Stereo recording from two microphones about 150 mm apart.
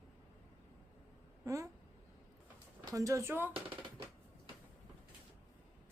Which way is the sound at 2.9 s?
20° right (ahead or behind).